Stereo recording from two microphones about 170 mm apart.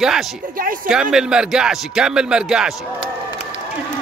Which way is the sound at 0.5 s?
55° right (ahead or behind).